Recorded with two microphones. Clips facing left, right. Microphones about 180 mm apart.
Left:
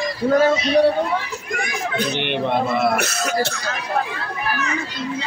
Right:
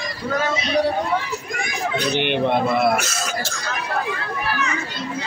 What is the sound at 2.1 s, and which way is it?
Speech, centre (ahead or behind).